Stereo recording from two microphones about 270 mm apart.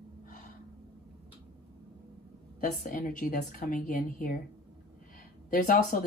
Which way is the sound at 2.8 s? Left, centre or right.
Left.